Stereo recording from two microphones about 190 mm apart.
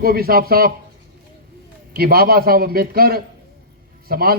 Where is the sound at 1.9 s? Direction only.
50° right (ahead or behind).